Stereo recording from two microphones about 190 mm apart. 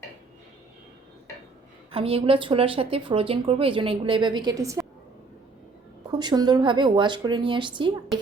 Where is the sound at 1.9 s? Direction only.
30° right (ahead or behind).